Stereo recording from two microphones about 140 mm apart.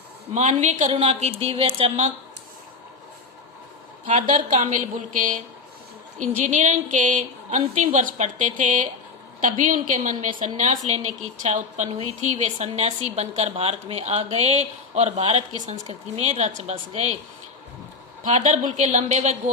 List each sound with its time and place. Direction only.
0.3 s a woman's voice: 55° right (ahead or behind)
4.0 s a woman's voice: 60° right (ahead or behind)
18.2 s speech: 55° right (ahead or behind)